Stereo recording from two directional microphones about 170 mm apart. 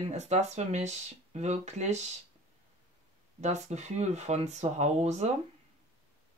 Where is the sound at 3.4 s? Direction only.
40° right (ahead or behind).